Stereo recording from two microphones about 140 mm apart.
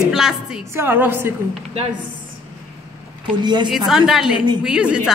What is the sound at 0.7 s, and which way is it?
Speech, 15° right (ahead or behind).